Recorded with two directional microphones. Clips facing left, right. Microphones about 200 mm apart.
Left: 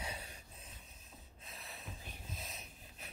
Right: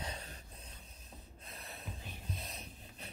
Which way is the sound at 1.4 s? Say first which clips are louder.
Right 2 dB; centre (ahead or behind).